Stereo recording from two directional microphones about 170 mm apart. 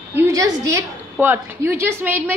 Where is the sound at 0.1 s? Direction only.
20° right (ahead or behind).